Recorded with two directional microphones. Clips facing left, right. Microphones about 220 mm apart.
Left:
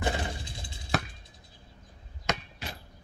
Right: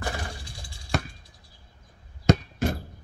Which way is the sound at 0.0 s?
20° left (ahead or behind).